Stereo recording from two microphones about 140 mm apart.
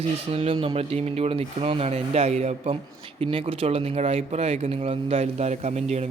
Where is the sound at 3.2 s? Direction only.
40° right (ahead or behind).